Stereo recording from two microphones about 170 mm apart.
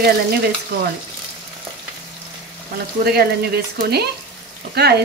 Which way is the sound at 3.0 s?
65° right (ahead or behind).